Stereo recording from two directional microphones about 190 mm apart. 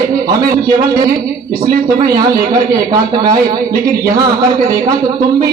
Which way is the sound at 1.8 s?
20° right (ahead or behind).